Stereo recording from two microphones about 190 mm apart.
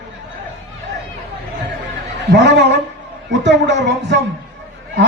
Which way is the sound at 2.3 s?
65° right (ahead or behind).